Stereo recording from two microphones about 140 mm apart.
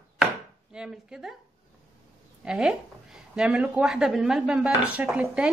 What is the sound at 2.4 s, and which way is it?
A woman's voice, 5° right (ahead or behind).